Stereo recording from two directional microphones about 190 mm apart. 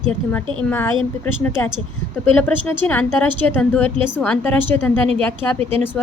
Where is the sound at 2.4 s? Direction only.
10° left (ahead or behind).